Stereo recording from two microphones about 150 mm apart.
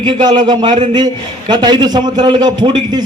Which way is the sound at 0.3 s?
30° right (ahead or behind).